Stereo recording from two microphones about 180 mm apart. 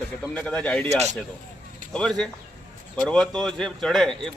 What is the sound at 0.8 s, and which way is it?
Speech, 35° right (ahead or behind).